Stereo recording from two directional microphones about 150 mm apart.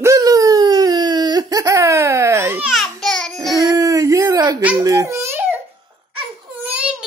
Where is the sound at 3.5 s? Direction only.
25° right (ahead or behind).